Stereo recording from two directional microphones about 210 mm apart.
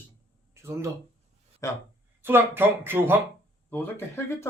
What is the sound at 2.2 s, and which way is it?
Speech, 10° right (ahead or behind).